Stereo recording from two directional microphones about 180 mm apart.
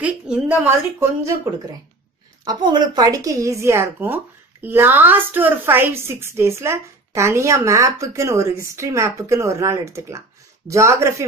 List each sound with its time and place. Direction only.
0.0 s a woman's voice: 10° right (ahead or behind)